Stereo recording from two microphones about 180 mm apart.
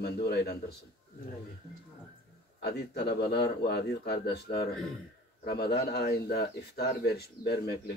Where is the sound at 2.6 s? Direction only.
65° left (ahead or behind).